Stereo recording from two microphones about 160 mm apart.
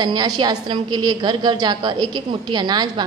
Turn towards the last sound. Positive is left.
turn(degrees=-25)  # may be behind; listen again after turning